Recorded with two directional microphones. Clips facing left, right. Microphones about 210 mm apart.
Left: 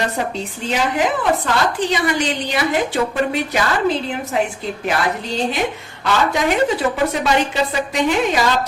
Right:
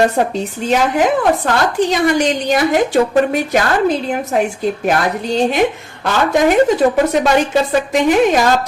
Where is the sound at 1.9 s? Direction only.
45° right (ahead or behind).